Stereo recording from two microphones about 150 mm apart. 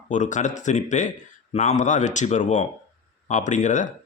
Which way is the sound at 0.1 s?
55° left (ahead or behind).